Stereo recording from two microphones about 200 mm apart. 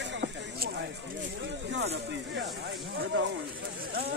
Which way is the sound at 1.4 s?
65° right (ahead or behind).